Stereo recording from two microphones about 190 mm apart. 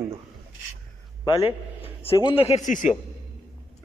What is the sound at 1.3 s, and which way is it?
A man's voice, 30° left (ahead or behind).